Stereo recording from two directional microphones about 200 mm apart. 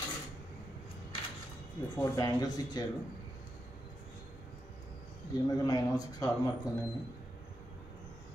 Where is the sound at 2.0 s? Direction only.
20° left (ahead or behind).